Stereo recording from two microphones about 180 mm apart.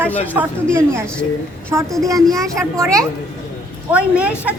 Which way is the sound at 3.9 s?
5° right (ahead or behind).